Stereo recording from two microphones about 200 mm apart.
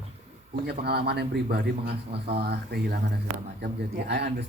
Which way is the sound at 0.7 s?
55° right (ahead or behind).